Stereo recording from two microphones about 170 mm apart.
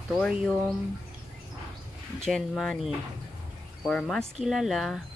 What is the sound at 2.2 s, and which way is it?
Speech, centre (ahead or behind).